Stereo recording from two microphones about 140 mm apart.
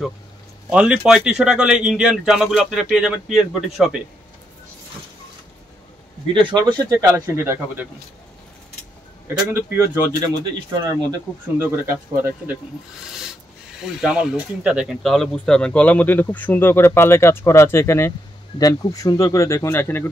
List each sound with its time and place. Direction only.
0.7 s a man's voice: 10° right (ahead or behind)
6.3 s speech: 30° right (ahead or behind)
6.9 s speech: 20° right (ahead or behind)
9.5 s speech: 20° right (ahead or behind)
13.8 s speech: 5° right (ahead or behind); by 20.1 s 15° left (ahead or behind)